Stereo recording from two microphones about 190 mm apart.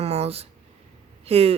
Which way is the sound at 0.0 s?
30° right (ahead or behind).